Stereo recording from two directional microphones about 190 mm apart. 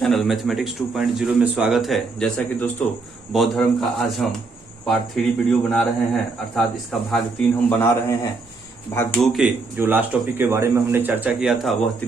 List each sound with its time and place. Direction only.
0.0 s a man's voice: centre (ahead or behind)
8.9 s speech: 20° left (ahead or behind)
9.2 s speech: centre (ahead or behind)
9.7 s speech: 10° right (ahead or behind)